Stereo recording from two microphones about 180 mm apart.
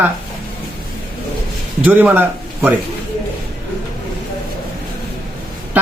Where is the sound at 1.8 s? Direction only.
10° right (ahead or behind).